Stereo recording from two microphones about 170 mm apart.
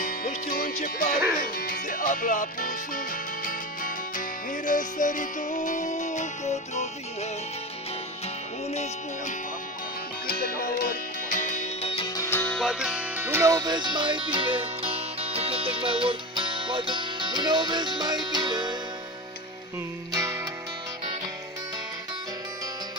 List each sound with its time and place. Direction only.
0.0 s music: 55° left (ahead or behind)
4.6 s music: 50° left (ahead or behind)
10.2 s music: 60° left (ahead or behind)
12.3 s music: 15° left (ahead or behind)
12.5 s music: 5° right (ahead or behind); by 18.8 s 25° right (ahead or behind)
20.1 s music: 20° right (ahead or behind)